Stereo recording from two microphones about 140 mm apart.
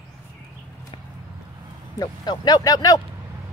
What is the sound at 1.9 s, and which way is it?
Speech, 30° left (ahead or behind).